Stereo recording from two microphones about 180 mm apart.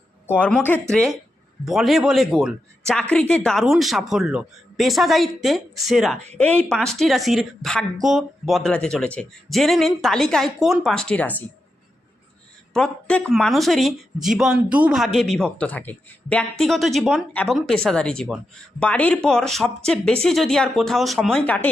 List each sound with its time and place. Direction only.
0.3 s a woman's voice: 5° left (ahead or behind)
12.7 s a woman's voice: 5° left (ahead or behind)